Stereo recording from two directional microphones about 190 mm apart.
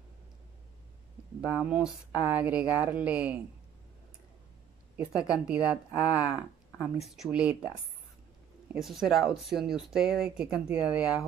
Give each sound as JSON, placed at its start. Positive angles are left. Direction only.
{"t": 1.5, "sound": "speech", "side_deg": -5}
{"t": 4.9, "sound": "speech", "side_deg": -5}
{"t": 8.7, "sound": "speech", "side_deg": 0}